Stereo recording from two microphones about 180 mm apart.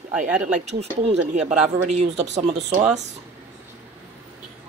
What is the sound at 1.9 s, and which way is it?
Speech, 40° right (ahead or behind).